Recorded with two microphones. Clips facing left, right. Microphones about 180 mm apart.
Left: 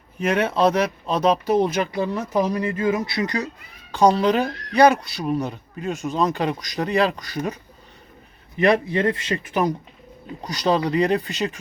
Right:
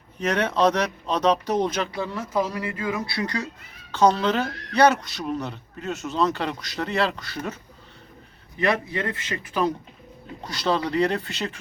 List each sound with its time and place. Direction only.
0.2 s speech: 10° left (ahead or behind)